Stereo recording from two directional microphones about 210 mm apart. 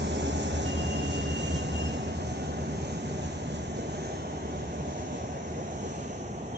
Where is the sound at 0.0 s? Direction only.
55° right (ahead or behind).